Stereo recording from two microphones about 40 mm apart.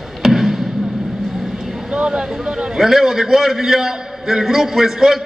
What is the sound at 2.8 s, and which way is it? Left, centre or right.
A man's voice, centre.